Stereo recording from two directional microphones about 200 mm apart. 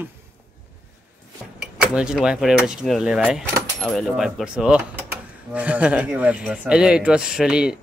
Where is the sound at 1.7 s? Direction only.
5° right (ahead or behind).